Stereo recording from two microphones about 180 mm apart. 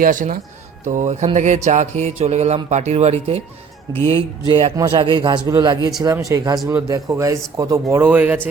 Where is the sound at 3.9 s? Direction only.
20° right (ahead or behind).